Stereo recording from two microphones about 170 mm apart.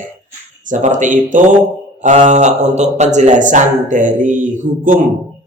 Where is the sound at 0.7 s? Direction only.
45° right (ahead or behind).